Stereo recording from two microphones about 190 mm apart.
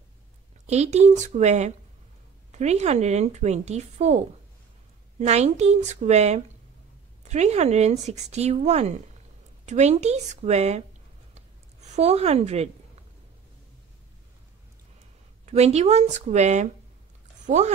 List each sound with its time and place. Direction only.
0.7 s speech: 35° right (ahead or behind)
5.2 s speech: 35° right (ahead or behind)
11.3 s a sound: 35° right (ahead or behind)
15.4 s speech: 35° right (ahead or behind)